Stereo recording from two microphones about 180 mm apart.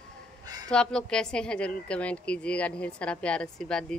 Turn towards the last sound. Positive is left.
turn(degrees=5)  # may be behind; listen again after turning